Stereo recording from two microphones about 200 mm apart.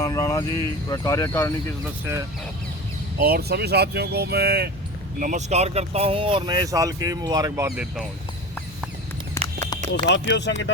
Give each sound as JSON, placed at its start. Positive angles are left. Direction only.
{"t": 0.0, "sound": "speech", "side_deg": 15}
{"t": 3.2, "sound": "speech", "side_deg": -50}
{"t": 5.2, "sound": "speech", "side_deg": -35}
{"t": 9.4, "sound": "run", "side_deg": 15}
{"t": 9.9, "sound": "speech", "side_deg": 60}